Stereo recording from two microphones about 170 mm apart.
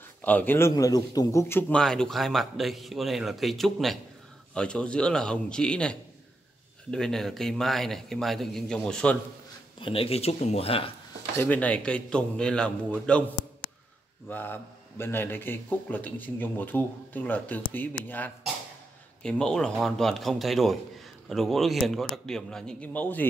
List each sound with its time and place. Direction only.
0.2 s a man's voice: 10° left (ahead or behind)
9.8 s speech: 30° left (ahead or behind)
11.3 s a man's voice: 10° left (ahead or behind)
14.3 s a man's voice: 10° left (ahead or behind)